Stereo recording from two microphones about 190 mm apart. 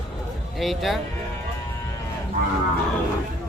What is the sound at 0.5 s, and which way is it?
Speech, centre (ahead or behind).